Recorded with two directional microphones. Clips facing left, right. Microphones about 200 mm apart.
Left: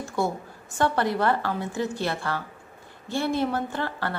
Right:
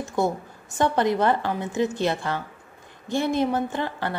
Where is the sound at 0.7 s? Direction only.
20° right (ahead or behind).